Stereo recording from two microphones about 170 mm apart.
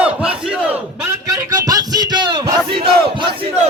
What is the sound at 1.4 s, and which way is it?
Music, 20° right (ahead or behind).